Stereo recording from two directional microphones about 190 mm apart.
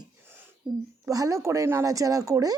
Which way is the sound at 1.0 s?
15° right (ahead or behind).